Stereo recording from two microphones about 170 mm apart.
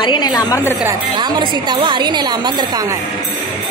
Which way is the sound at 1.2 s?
25° right (ahead or behind).